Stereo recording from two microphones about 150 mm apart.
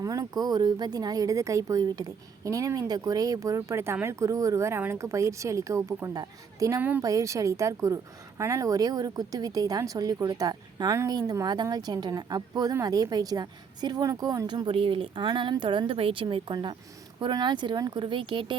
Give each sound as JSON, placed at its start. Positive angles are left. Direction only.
{"t": 0.0, "sound": "speech", "side_deg": -25}